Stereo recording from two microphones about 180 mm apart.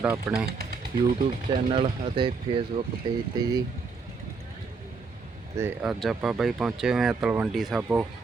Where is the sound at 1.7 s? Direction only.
30° right (ahead or behind).